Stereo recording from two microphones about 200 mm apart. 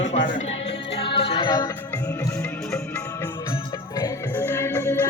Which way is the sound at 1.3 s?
20° left (ahead or behind).